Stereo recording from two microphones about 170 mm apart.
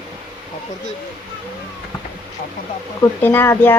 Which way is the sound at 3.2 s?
10° left (ahead or behind).